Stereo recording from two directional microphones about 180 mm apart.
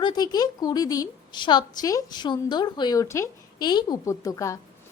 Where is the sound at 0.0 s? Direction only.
25° left (ahead or behind).